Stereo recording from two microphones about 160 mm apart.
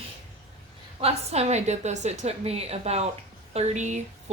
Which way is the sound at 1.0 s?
40° right (ahead or behind).